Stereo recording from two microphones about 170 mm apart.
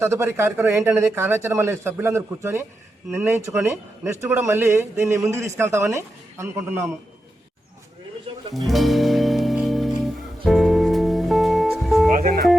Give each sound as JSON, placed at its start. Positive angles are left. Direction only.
{"t": 0.0, "sound": "speech", "side_deg": -15}
{"t": 8.5, "sound": "music", "side_deg": 0}
{"t": 12.1, "sound": "music", "side_deg": -55}